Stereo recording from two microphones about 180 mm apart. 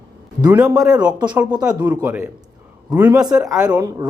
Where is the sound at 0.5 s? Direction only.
5° right (ahead or behind).